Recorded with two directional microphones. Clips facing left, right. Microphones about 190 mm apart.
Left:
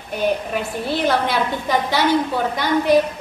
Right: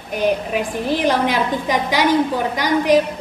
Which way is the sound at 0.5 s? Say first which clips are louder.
Right 3 dB; 15° right (ahead or behind).